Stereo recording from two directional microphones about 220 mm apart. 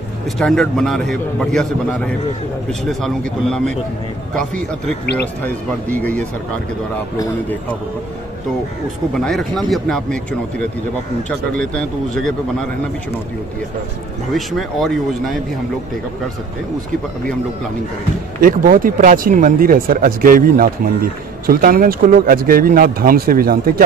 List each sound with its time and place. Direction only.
0.4 s a man's voice: centre (ahead or behind)
5.0 s speech: 50° left (ahead or behind)
5.4 s a man's voice: 10° left (ahead or behind)
9.1 s a man's voice: centre (ahead or behind)
14.3 s a man's voice: centre (ahead or behind)
18.4 s speech: 40° right (ahead or behind)